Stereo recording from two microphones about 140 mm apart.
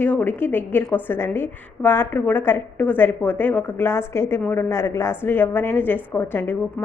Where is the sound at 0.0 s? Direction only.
10° left (ahead or behind).